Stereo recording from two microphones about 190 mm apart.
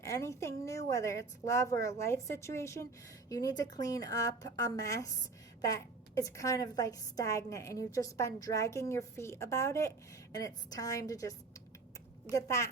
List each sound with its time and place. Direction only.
0.0 s a woman's voice: 15° left (ahead or behind)